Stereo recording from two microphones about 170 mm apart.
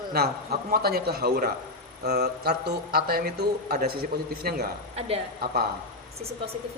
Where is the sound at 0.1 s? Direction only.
65° right (ahead or behind).